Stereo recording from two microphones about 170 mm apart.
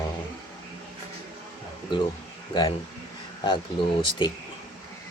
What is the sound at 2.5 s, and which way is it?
Speech, 25° left (ahead or behind).